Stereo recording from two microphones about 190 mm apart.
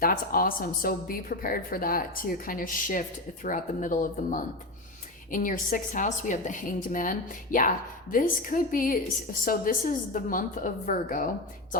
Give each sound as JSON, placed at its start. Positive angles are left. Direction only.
{"t": 0.0, "sound": "a woman's voice", "side_deg": 50}